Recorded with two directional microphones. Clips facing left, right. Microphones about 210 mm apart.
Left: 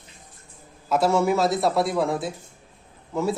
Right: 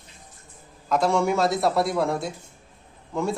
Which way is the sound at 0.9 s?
5° left (ahead or behind).